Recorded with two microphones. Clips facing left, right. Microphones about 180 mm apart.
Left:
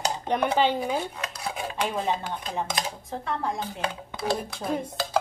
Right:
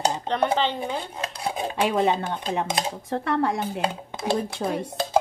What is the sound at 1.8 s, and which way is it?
Speech, 75° right (ahead or behind).